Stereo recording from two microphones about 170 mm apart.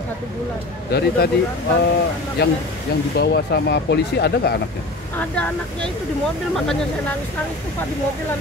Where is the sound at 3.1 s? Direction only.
75° left (ahead or behind).